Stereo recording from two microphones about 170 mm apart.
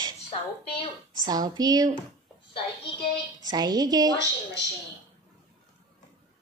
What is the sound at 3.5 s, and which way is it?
Speech, 25° right (ahead or behind).